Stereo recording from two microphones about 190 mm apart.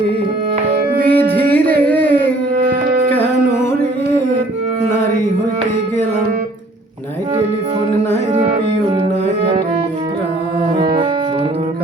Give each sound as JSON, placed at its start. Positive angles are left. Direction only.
{"t": 1.0, "sound": "music", "side_deg": -55}
{"t": 2.6, "sound": "music", "side_deg": -55}
{"t": 3.1, "sound": "carnatic music", "side_deg": 10}
{"t": 10.8, "sound": "music", "side_deg": -25}